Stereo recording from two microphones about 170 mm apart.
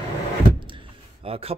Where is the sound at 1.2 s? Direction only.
35° right (ahead or behind).